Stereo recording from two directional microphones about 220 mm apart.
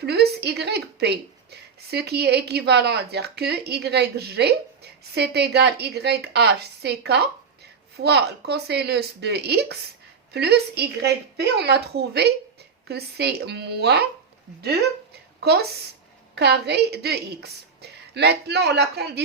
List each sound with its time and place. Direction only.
0.0 s a woman's voice: 45° right (ahead or behind)
16.3 s a woman's voice: 50° right (ahead or behind)